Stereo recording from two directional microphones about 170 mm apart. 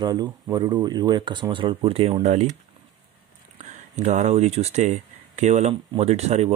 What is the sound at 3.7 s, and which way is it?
Speech, 45° right (ahead or behind).